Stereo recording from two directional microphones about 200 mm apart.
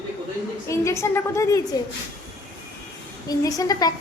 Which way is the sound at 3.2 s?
15° left (ahead or behind).